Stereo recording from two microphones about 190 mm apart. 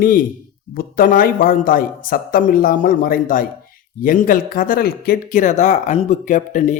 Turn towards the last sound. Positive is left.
turn(degrees=45)  # may be behind; listen again after turning